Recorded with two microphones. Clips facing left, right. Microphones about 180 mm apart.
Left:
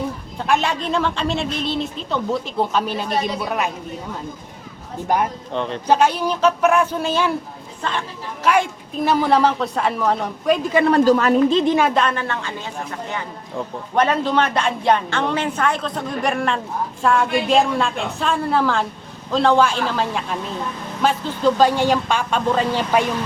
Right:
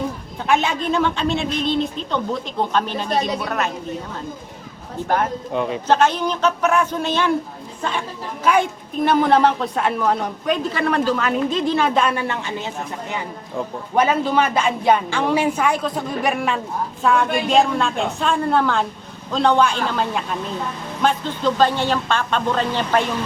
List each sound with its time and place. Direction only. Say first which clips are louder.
0.4 s speech: right 1 dB; centre (ahead or behind)
5.0 s speech: left 1 dB; 10° left (ahead or behind)
5.5 s speech: right 2 dB; 10° right (ahead or behind)
5.9 s speech: left 1 dB; 10° left (ahead or behind)
7.8 s speech: even; 5° right (ahead or behind)
9.0 s speech: right 1 dB; centre (ahead or behind)
10.8 s speech: left 5 dB; 35° left (ahead or behind)
11.6 s speech: left 2 dB; 15° left (ahead or behind)
11.9 s speech: right 1 dB; 5° right (ahead or behind)
13.9 s speech: even; 5° right (ahead or behind); by 23.0 s 10° left (ahead or behind)